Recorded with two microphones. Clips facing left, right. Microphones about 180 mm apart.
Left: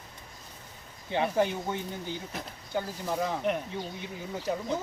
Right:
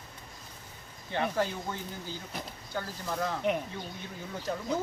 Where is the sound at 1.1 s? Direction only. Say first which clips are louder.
Left 3 dB; 20° left (ahead or behind).